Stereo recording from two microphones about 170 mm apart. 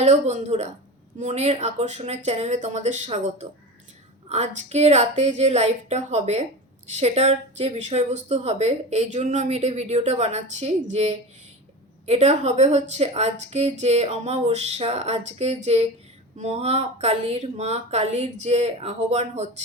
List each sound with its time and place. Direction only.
0.0 s speech: 40° right (ahead or behind)